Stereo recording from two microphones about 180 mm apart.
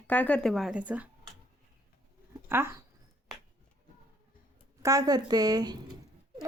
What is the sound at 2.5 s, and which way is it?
Speech, 15° right (ahead or behind).